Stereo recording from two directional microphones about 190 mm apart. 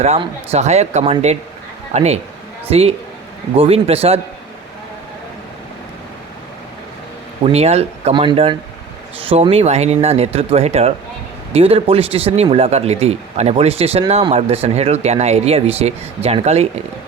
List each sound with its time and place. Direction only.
0.0 s speech: 35° right (ahead or behind)
7.4 s speech: 35° right (ahead or behind)